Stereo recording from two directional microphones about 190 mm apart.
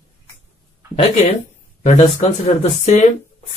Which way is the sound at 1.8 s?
35° left (ahead or behind).